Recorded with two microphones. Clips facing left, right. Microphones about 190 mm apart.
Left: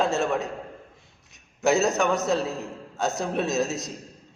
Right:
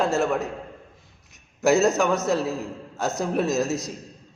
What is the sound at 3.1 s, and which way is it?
Speech, centre (ahead or behind).